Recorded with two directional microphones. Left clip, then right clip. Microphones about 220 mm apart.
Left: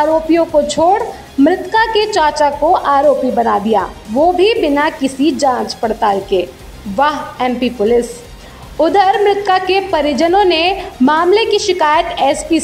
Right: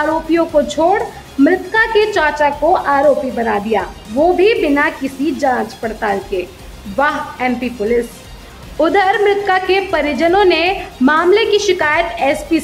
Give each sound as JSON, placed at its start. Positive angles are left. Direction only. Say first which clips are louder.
{"t": 0.0, "sound": "a woman's voice", "louder": "left 3 dB", "side_deg": 15}